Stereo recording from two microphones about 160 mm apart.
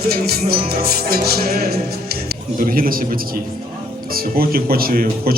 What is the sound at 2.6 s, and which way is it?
Speech, 65° right (ahead or behind).